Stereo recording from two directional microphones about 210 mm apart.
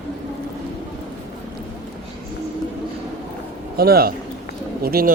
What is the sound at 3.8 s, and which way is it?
Speech, 45° right (ahead or behind).